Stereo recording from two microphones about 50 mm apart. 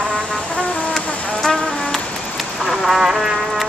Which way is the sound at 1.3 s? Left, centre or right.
Centre.